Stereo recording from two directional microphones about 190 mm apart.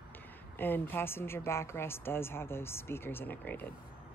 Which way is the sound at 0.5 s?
10° left (ahead or behind).